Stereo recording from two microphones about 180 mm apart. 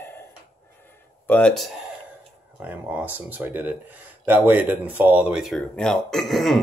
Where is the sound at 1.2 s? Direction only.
5° left (ahead or behind).